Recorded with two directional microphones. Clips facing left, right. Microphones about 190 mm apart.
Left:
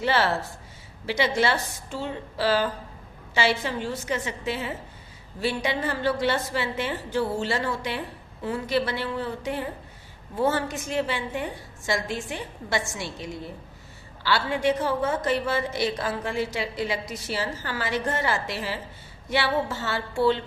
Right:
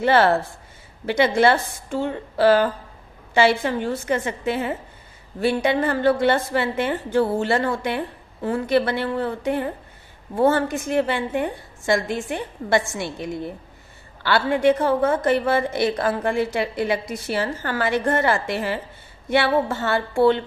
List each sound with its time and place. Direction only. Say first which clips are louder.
0.0 s a woman's voice: right 7 dB; 55° right (ahead or behind)